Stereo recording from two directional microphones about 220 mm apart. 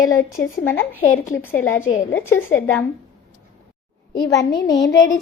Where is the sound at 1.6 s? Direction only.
65° left (ahead or behind).